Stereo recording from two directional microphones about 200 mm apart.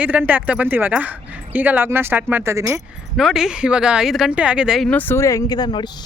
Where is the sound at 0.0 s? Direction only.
10° right (ahead or behind).